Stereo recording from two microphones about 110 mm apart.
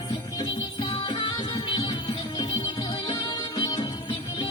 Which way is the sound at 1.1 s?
40° left (ahead or behind).